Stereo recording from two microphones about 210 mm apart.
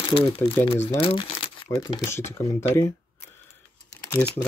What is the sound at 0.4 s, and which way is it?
Speech, 10° left (ahead or behind).